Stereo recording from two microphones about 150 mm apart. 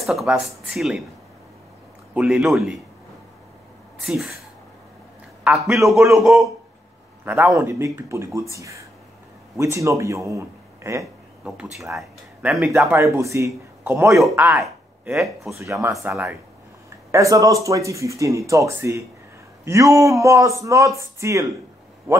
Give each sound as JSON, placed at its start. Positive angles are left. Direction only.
{"t": 0.0, "sound": "speech", "side_deg": 0}
{"t": 2.1, "sound": "speech", "side_deg": -5}
{"t": 4.0, "sound": "speech", "side_deg": -5}
{"t": 5.5, "sound": "speech", "side_deg": -10}
{"t": 7.2, "sound": "a man's voice", "side_deg": -15}
{"t": 11.4, "sound": "speech", "side_deg": -5}